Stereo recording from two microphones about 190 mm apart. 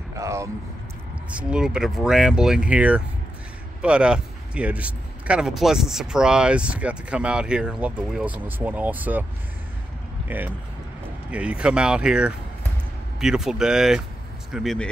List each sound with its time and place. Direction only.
0.1 s speech: 15° right (ahead or behind)
1.3 s speech: 5° right (ahead or behind)
10.2 s speech: 10° right (ahead or behind)